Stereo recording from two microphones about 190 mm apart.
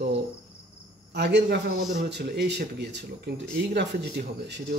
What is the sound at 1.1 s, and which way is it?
Speech, 65° right (ahead or behind).